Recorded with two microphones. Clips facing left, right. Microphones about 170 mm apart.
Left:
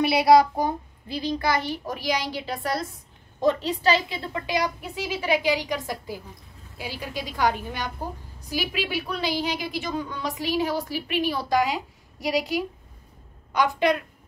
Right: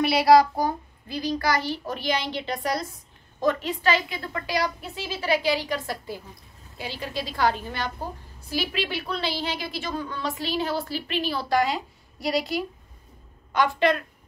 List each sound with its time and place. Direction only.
0.0 s a woman's voice: 20° left (ahead or behind); by 2.9 s centre (ahead or behind)
3.6 s a woman's voice: 35° left (ahead or behind)
4.2 s a woman's voice: 20° left (ahead or behind)